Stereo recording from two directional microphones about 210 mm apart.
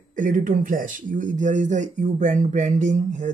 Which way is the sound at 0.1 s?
40° right (ahead or behind).